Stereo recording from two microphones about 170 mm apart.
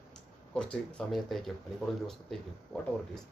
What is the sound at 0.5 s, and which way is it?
Speech, 5° left (ahead or behind).